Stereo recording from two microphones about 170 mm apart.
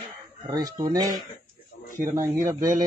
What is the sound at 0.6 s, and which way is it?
A man's voice, 20° right (ahead or behind).